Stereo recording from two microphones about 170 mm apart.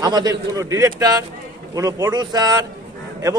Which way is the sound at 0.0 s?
25° right (ahead or behind).